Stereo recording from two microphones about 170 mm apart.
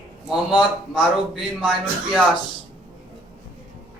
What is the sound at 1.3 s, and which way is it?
Speech, centre (ahead or behind).